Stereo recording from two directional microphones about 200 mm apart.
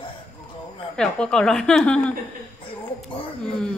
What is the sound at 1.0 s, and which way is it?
Speech, 5° left (ahead or behind).